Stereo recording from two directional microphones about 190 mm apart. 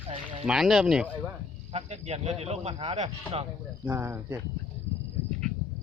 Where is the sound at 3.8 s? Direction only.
10° right (ahead or behind).